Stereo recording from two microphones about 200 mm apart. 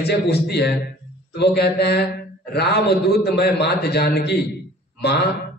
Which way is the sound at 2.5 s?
55° left (ahead or behind).